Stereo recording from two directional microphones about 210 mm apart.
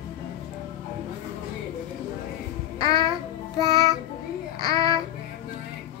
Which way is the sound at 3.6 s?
15° left (ahead or behind).